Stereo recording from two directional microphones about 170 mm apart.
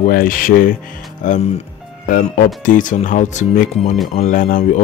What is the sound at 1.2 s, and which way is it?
Speech, 45° left (ahead or behind).